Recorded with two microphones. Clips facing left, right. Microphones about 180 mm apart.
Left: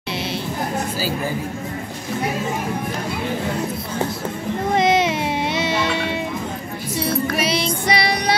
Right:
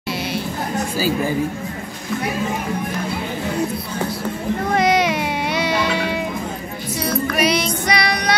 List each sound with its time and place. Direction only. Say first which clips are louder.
4.7 s music: even; 25° left (ahead or behind)